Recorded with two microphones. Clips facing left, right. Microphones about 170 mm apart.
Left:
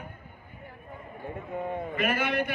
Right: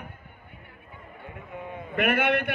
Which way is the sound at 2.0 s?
60° right (ahead or behind).